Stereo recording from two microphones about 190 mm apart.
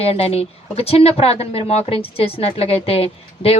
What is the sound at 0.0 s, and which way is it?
Speech, 30° left (ahead or behind).